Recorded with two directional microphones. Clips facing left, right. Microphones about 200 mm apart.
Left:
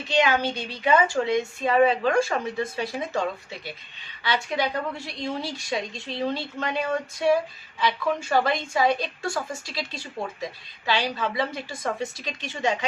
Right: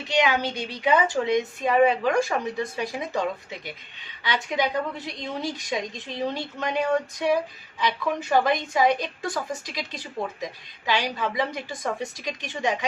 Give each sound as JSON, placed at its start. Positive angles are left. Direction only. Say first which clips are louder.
{"t": 0.1, "sound": "speech", "louder": "left 1 dB", "side_deg": -15}